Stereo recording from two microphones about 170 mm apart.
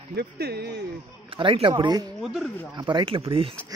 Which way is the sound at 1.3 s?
30° right (ahead or behind).